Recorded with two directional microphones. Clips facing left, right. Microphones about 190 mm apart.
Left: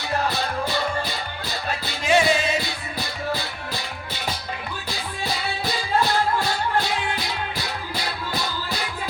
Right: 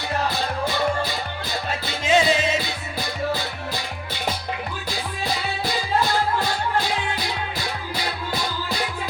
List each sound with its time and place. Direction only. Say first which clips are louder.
2.0 s music: even; 20° right (ahead or behind)